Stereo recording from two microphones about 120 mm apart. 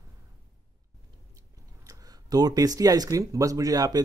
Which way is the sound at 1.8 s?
30° right (ahead or behind).